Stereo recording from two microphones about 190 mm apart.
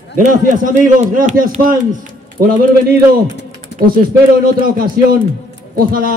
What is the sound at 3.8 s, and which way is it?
A man's voice, 50° right (ahead or behind).